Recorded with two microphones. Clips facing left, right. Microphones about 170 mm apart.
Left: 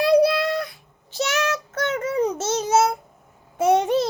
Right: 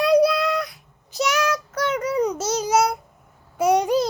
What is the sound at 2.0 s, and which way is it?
Babbling, 25° left (ahead or behind).